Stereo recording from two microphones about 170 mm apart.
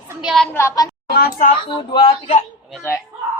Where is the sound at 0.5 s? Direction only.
20° left (ahead or behind).